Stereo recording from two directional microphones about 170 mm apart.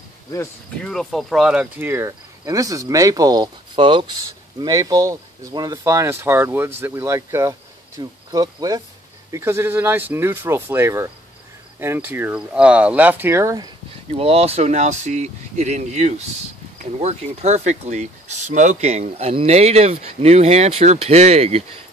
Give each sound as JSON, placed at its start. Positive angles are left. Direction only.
{"t": 0.8, "sound": "cricket", "side_deg": 0}
{"t": 9.3, "sound": "speech", "side_deg": -15}
{"t": 14.1, "sound": "speech", "side_deg": -35}